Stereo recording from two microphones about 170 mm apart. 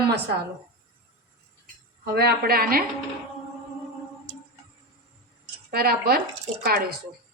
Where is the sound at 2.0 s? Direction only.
70° right (ahead or behind).